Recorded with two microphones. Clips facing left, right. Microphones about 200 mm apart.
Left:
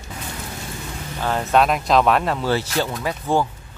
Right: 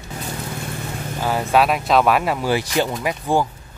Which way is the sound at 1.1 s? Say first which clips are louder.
Even; 10° right (ahead or behind).